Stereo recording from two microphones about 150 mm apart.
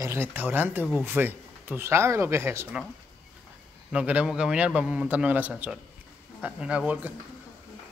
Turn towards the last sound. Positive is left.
turn(degrees=-10)  # may be behind; listen again after turning